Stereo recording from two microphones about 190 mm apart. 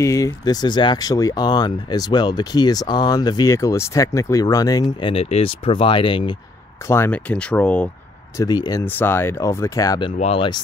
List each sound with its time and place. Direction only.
0.0 s speech: 15° left (ahead or behind)
5.1 s speech: 30° left (ahead or behind)
6.9 s speech: 10° left (ahead or behind)
8.4 s speech: 20° left (ahead or behind)
8.8 s speech: 10° left (ahead or behind)
10.1 s speech: 30° left (ahead or behind)